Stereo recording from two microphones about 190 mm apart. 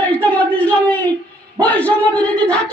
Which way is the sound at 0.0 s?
5° left (ahead or behind).